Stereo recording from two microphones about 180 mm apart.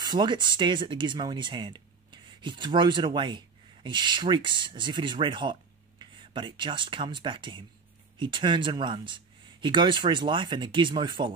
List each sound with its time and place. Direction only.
0.0 s speech: 25° right (ahead or behind)